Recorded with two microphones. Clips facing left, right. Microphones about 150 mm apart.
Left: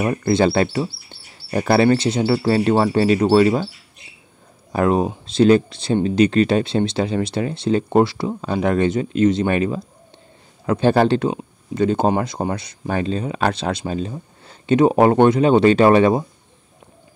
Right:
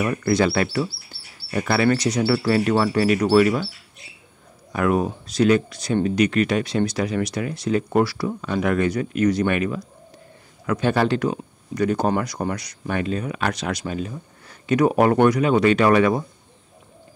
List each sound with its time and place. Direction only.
0.0 s speech: 30° left (ahead or behind)
4.7 s speech: 25° left (ahead or behind)